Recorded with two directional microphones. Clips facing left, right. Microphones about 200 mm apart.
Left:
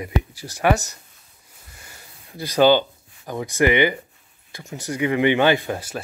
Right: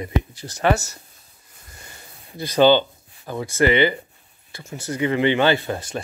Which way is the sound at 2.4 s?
10° left (ahead or behind).